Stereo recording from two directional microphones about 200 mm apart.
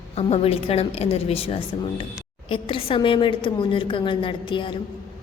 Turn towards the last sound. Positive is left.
turn(degrees=25)  # may be behind; listen again after turning